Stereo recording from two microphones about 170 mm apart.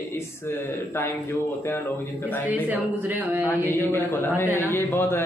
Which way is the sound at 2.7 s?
10° right (ahead or behind).